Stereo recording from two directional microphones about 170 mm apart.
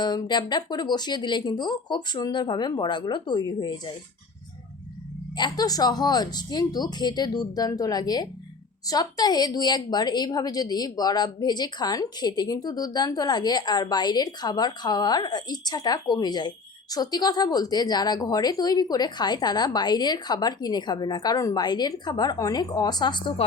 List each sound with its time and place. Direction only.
0.0 s a woman's voice: 25° left (ahead or behind)
5.4 s a woman's voice: 20° left (ahead or behind)